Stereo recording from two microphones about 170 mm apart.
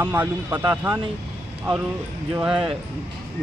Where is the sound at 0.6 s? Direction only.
20° right (ahead or behind).